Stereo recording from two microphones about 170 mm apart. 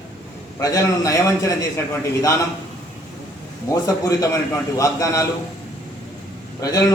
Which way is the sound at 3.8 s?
20° left (ahead or behind).